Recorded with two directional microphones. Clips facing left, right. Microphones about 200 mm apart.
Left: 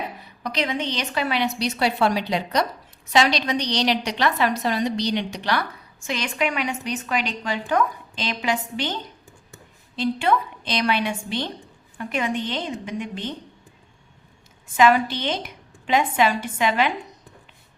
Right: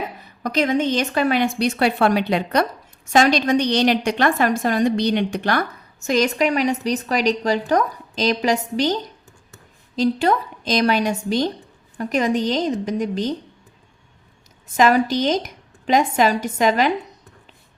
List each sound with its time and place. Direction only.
0.4 s a woman's voice: 45° right (ahead or behind)
14.8 s a woman's voice: 40° right (ahead or behind)